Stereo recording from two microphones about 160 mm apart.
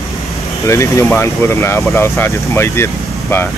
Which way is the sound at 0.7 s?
20° left (ahead or behind).